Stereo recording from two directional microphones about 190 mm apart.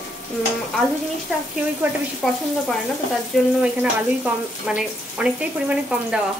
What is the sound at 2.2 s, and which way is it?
Speech, centre (ahead or behind).